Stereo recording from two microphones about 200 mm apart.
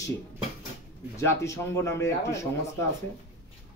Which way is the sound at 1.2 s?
15° left (ahead or behind).